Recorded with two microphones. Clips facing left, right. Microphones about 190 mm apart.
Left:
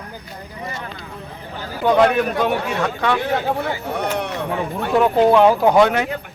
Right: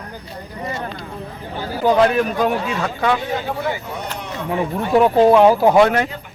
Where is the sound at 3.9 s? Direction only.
65° left (ahead or behind).